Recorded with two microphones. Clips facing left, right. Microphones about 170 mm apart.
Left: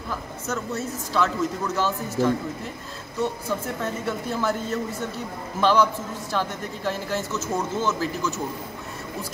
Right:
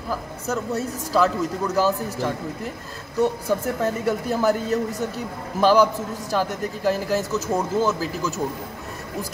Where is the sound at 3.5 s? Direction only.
40° right (ahead or behind).